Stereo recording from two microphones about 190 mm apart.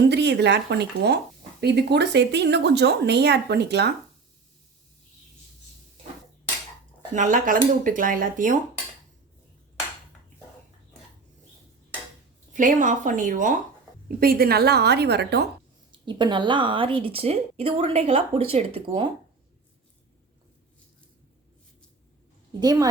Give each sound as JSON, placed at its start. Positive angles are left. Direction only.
{"t": 0.0, "sound": "a woman's voice", "side_deg": -65}
{"t": 7.1, "sound": "speech", "side_deg": -40}
{"t": 12.5, "sound": "a woman's voice", "side_deg": -40}
{"t": 15.9, "sound": "speech", "side_deg": -25}
{"t": 22.6, "sound": "speech", "side_deg": -20}